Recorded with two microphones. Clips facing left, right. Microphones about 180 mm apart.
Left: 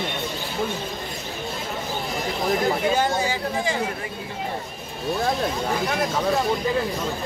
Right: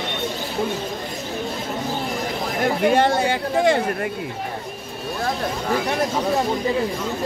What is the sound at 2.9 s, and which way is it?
Speech, 65° right (ahead or behind).